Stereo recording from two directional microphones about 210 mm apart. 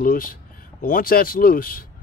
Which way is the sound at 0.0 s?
45° left (ahead or behind).